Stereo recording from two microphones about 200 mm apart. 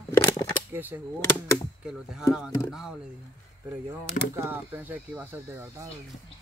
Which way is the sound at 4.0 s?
10° right (ahead or behind).